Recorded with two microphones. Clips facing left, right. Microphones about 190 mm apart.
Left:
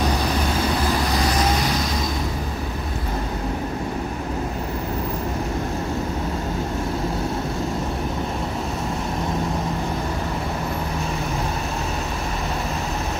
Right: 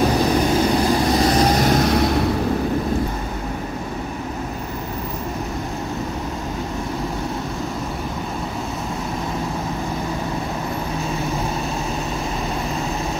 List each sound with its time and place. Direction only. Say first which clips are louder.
1.4 s vehicle: right 6 dB; 50° right (ahead or behind); by 2.2 s 65° right (ahead or behind)